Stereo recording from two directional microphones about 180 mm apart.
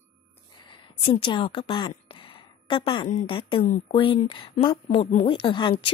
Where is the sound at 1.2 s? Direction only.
30° left (ahead or behind).